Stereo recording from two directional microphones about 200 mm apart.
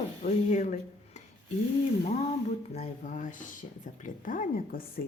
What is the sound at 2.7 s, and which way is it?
Speech, 40° left (ahead or behind).